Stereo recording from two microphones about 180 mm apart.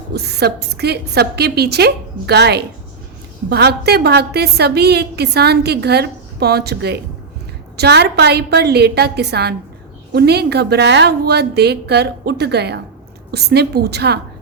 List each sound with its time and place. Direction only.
0.1 s a woman's voice: 65° right (ahead or behind)